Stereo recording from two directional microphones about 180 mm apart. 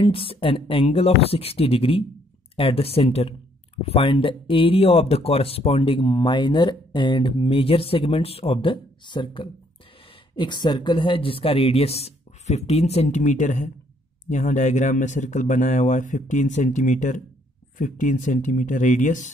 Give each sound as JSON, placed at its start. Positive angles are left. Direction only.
{"t": 0.0, "sound": "speech", "side_deg": 30}